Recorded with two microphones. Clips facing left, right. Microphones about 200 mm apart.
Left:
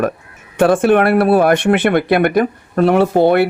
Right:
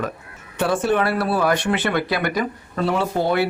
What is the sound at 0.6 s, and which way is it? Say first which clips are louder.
Speech: left 9 dB; 50° left (ahead or behind).